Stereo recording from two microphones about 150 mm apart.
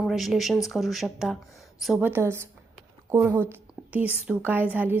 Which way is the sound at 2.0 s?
15° right (ahead or behind).